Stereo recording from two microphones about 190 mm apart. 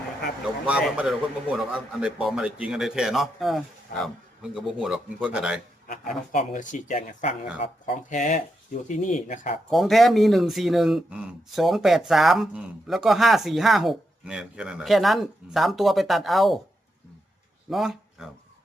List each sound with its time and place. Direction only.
0.4 s speech: 5° right (ahead or behind)
6.3 s speech: 40° left (ahead or behind)
9.6 s speech: centre (ahead or behind)
17.7 s a sound: centre (ahead or behind)